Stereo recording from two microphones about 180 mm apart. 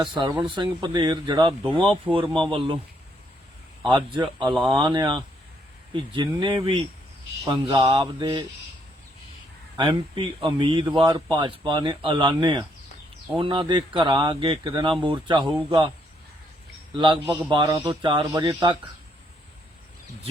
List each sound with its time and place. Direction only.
0.1 s a man's voice: 25° right (ahead or behind)
3.8 s a man's voice: 25° right (ahead or behind)
9.7 s a man's voice: 30° right (ahead or behind)
16.9 s a man's voice: 25° right (ahead or behind)